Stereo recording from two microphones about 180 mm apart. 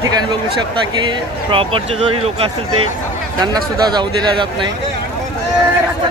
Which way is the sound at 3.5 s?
20° right (ahead or behind).